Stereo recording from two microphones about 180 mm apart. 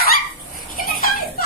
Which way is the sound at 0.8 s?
55° left (ahead or behind).